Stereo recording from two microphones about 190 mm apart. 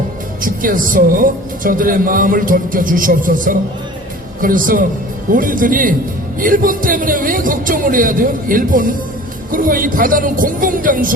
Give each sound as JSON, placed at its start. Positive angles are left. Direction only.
{"t": 0.4, "sound": "speech", "side_deg": -45}